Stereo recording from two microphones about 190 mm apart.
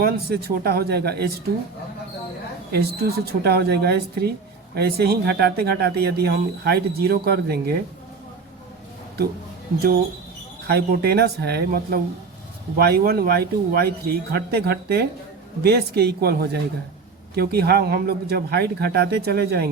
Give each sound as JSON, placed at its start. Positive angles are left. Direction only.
{"t": 0.0, "sound": "speech", "side_deg": -55}
{"t": 2.7, "sound": "speech", "side_deg": -55}
{"t": 10.7, "sound": "speech", "side_deg": -55}